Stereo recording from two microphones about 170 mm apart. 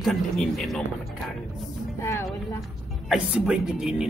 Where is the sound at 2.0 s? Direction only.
15° left (ahead or behind).